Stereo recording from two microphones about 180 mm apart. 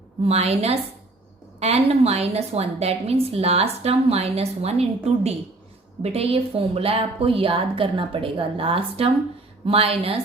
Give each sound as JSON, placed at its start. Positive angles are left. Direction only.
{"t": 0.3, "sound": "a woman's voice", "side_deg": -35}
{"t": 6.0, "sound": "a woman's voice", "side_deg": -35}